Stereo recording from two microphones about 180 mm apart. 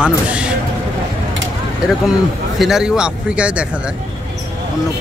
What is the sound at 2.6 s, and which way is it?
Speech, 5° right (ahead or behind).